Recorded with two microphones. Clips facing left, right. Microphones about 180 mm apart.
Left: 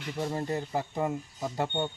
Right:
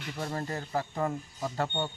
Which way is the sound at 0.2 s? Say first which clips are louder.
Left 4 dB; 15° left (ahead or behind).